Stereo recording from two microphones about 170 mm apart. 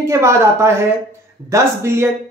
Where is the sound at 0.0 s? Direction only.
15° right (ahead or behind).